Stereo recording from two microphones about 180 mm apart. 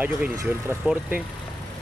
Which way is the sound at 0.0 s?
10° right (ahead or behind).